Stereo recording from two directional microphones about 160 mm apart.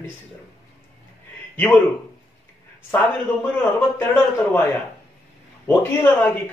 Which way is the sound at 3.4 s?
15° left (ahead or behind).